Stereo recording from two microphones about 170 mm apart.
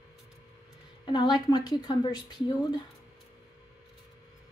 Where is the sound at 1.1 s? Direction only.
25° left (ahead or behind).